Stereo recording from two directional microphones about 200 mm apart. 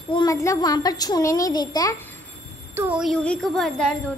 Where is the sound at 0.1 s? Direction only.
20° left (ahead or behind).